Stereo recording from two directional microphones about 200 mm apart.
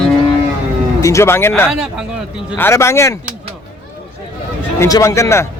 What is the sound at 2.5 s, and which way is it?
Speech, 10° left (ahead or behind).